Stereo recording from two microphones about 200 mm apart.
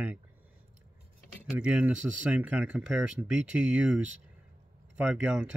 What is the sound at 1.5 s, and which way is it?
Speech, 5° right (ahead or behind).